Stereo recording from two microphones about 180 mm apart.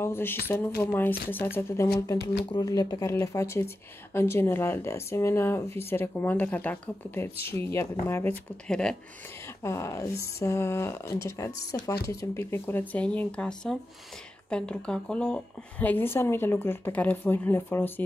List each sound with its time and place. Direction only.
0.0 s speech: 10° left (ahead or behind)
9.6 s speech: 15° left (ahead or behind)